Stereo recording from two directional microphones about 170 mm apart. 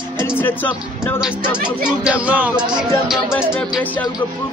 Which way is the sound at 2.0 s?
5° right (ahead or behind).